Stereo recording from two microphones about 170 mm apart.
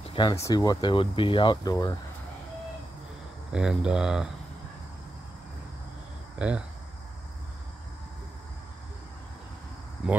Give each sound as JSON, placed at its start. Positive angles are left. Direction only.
{"t": 0.1, "sound": "speech", "side_deg": 25}
{"t": 3.5, "sound": "speech", "side_deg": -5}
{"t": 6.3, "sound": "speech", "side_deg": -5}